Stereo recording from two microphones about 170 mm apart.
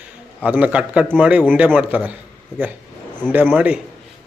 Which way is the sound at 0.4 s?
10° right (ahead or behind).